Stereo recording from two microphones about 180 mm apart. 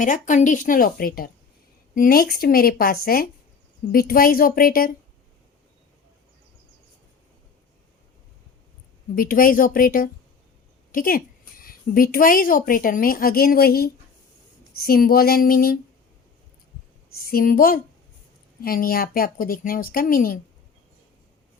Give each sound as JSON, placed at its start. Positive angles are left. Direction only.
{"t": 0.0, "sound": "a woman's voice", "side_deg": 45}
{"t": 9.1, "sound": "a woman's voice", "side_deg": 50}
{"t": 17.2, "sound": "a woman's voice", "side_deg": 55}